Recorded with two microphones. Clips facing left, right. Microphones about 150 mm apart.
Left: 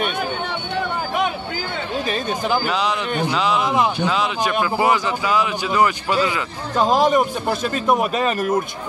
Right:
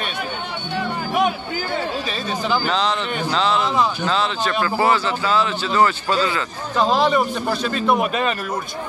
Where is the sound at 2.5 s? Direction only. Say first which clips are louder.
Right 1 dB; 10° left (ahead or behind).